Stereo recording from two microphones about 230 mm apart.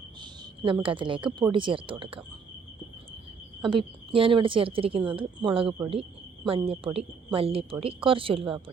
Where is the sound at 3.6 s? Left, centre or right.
Right.